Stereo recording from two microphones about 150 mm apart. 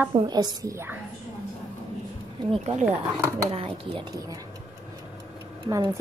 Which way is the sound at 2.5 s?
40° right (ahead or behind).